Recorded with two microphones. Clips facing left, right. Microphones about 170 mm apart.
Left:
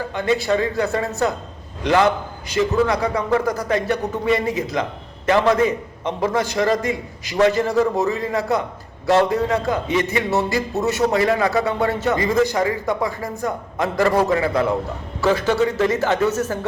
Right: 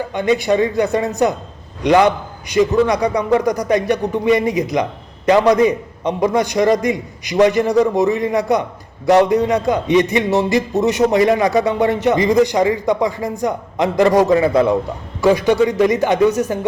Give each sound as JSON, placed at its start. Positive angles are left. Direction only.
{"t": 0.1, "sound": "a man's voice", "side_deg": -20}